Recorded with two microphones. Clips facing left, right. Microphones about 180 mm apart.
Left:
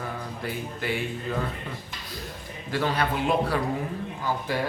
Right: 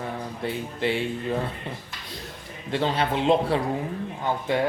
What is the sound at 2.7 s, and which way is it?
Speech, 25° right (ahead or behind).